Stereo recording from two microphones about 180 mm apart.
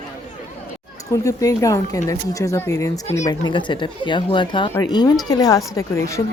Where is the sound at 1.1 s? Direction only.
20° left (ahead or behind).